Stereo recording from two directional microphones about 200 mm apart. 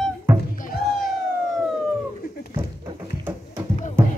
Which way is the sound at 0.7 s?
50° left (ahead or behind).